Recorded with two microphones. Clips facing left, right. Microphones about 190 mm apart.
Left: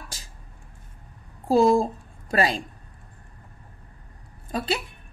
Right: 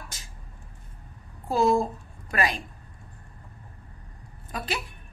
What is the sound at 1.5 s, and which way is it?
Speech, 30° left (ahead or behind).